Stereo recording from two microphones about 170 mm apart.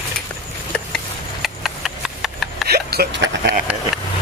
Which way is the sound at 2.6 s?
65° right (ahead or behind).